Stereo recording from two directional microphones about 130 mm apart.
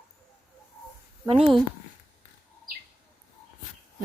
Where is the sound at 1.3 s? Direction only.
45° right (ahead or behind).